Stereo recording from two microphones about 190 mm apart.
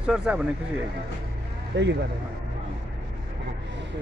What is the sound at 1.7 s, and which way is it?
Speech, 75° right (ahead or behind).